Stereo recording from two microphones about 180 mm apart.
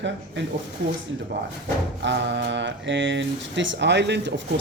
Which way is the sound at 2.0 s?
80° right.